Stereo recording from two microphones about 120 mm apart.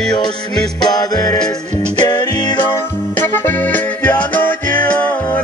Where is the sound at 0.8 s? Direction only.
30° left (ahead or behind).